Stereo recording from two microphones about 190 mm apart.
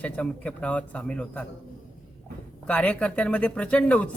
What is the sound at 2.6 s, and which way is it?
A man's voice, 5° left (ahead or behind).